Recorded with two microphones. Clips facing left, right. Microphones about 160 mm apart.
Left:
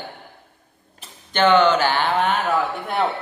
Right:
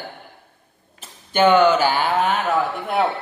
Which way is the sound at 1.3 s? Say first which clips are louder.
Right 1 dB; 10° right (ahead or behind).